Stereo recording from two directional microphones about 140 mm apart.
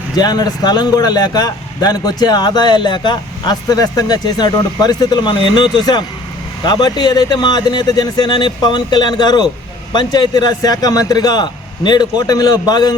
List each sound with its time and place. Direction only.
0.2 s a man's voice: 30° left (ahead or behind)